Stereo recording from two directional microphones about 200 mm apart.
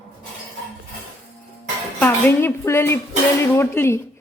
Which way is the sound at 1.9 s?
10° left (ahead or behind).